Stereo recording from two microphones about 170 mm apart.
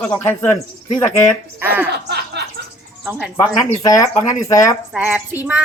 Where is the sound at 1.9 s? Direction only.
75° right (ahead or behind).